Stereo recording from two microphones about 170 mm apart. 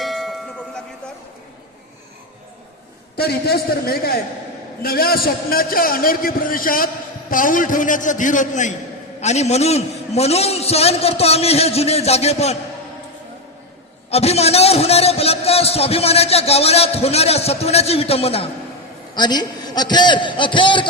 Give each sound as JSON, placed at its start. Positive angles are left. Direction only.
{"t": 0.0, "sound": "tubular bells", "side_deg": 0}
{"t": 3.2, "sound": "a man's voice", "side_deg": 70}
{"t": 14.1, "sound": "a man's voice", "side_deg": 35}
{"t": 19.1, "sound": "a man's voice", "side_deg": 25}